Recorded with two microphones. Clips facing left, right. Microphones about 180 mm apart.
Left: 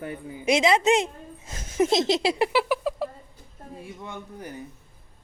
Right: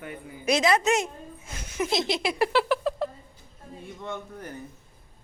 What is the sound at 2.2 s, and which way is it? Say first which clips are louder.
Speech: left 1 dB; 20° left (ahead or behind).